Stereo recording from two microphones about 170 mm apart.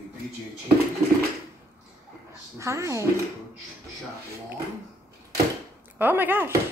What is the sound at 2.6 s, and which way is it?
Speech, 15° right (ahead or behind).